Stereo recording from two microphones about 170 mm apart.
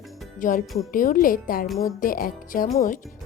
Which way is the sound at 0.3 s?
50° left (ahead or behind).